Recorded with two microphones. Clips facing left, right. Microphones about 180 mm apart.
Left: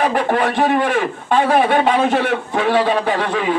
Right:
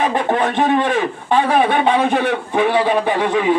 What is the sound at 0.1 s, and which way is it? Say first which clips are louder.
Speech: even; 20° right (ahead or behind).